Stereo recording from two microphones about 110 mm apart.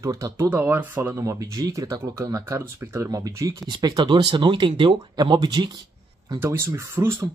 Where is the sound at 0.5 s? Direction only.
15° right (ahead or behind).